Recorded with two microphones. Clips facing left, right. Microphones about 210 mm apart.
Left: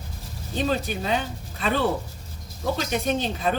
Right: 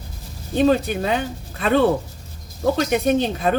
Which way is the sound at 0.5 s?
55° right (ahead or behind).